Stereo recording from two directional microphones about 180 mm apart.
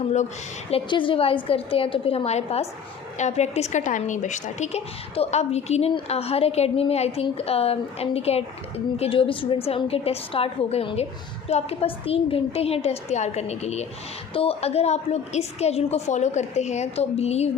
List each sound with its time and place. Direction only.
0.7 s a woman's voice: 25° left (ahead or behind)